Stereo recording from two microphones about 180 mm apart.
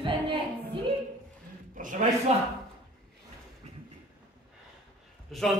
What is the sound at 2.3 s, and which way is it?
Speech, 35° right (ahead or behind).